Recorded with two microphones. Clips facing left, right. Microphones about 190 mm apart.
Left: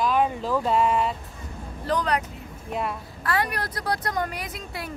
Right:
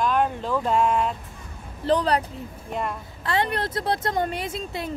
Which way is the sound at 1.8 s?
30° right (ahead or behind).